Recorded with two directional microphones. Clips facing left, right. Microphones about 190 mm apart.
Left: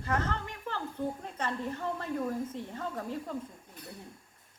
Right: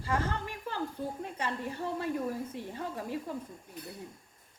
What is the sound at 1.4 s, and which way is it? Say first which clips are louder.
Speech: left 1 dB; 10° right (ahead or behind).